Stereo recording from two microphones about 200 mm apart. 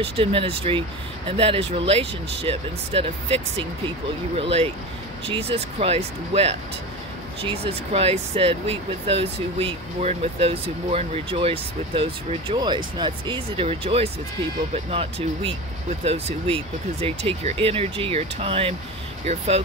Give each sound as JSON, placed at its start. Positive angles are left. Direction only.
{"t": 0.0, "sound": "speech", "side_deg": -25}
{"t": 4.4, "sound": "speech", "side_deg": -30}